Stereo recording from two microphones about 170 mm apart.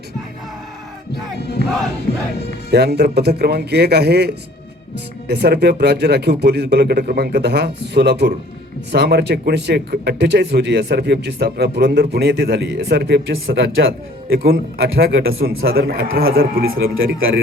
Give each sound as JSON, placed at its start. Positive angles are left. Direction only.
{"t": 1.4, "sound": "battle cry", "side_deg": 75}
{"t": 2.7, "sound": "a man's voice", "side_deg": -75}
{"t": 5.3, "sound": "a man's voice", "side_deg": -75}
{"t": 14.3, "sound": "a man's voice", "side_deg": -65}